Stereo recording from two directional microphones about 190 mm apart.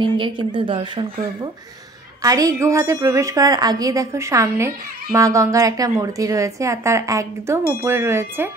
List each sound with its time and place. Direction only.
0.0 s a woman's voice: 25° right (ahead or behind)